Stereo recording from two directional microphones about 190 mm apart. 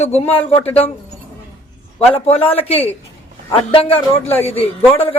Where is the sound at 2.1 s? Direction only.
30° left (ahead or behind).